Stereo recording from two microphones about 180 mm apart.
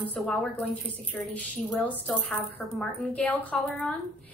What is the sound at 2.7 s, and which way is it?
A woman's voice, 5° left (ahead or behind).